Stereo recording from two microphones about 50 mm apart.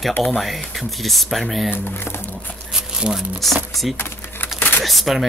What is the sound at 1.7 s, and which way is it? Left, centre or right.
Speech, left.